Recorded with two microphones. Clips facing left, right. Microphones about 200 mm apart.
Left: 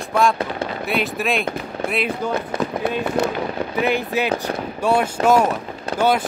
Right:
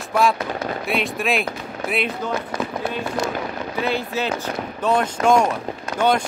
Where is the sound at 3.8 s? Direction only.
15° left (ahead or behind).